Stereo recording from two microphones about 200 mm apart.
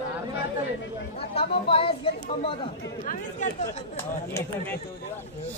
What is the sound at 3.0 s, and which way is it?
Speech, 40° left (ahead or behind).